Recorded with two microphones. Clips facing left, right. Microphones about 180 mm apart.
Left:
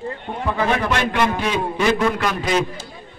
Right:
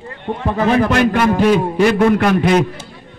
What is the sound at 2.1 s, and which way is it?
Speech, 55° right (ahead or behind).